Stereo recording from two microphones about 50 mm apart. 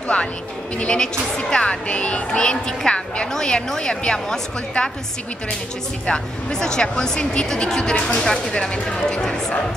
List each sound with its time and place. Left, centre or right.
0.1 s a woman's voice: centre
6.0 s a woman's voice: centre
8.2 s a woman's voice: centre